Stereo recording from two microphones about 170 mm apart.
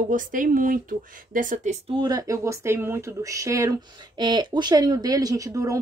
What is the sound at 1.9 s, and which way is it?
Speech, 25° right (ahead or behind).